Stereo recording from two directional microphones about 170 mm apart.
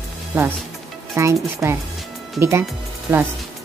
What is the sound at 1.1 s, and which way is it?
Speech, 15° right (ahead or behind).